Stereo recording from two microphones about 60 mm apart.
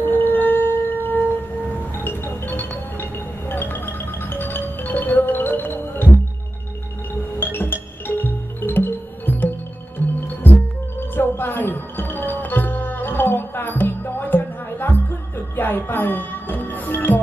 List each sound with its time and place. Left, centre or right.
0.0 s shofar: left
2.0 s music: left
7.3 s music: left